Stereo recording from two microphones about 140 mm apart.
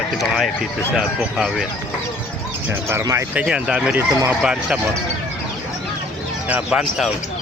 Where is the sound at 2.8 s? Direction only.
20° right (ahead or behind).